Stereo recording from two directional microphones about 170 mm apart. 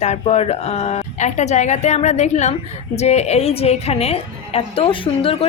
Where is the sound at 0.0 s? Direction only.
40° left (ahead or behind).